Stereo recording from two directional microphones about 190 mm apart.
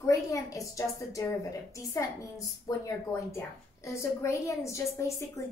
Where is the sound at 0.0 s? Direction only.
15° left (ahead or behind).